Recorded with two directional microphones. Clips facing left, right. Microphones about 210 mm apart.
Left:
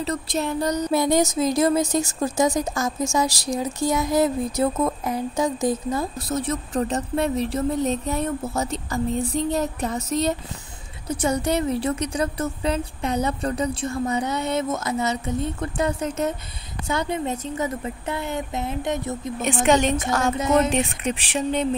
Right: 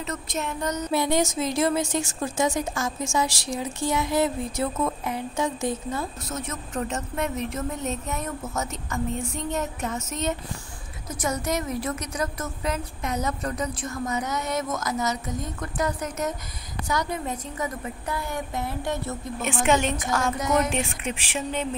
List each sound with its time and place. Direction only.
0.0 s a woman's voice: 35° left (ahead or behind); by 19.3 s 20° left (ahead or behind)
19.6 s speech: 35° left (ahead or behind)